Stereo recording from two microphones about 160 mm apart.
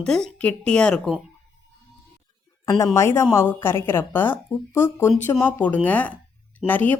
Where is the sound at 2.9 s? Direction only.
20° left (ahead or behind).